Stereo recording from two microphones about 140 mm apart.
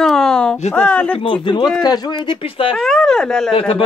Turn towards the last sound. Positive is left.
turn(degrees=40)  # may be behind; listen again after turning